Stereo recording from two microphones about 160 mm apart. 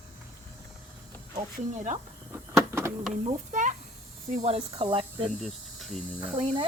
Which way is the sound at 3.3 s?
50° right (ahead or behind).